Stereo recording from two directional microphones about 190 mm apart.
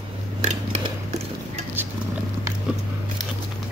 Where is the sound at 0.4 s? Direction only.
35° right (ahead or behind).